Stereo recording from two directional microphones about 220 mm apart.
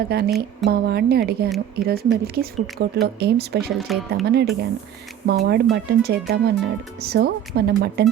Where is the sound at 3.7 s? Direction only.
Centre (ahead or behind).